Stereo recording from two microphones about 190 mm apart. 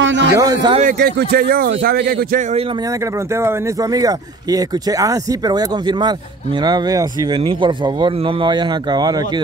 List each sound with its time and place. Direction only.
0.0 s a man's voice: 75° right (ahead or behind)
0.3 s speech: 20° right (ahead or behind)
0.9 s speech: 55° right (ahead or behind)
3.3 s speech: 15° right (ahead or behind)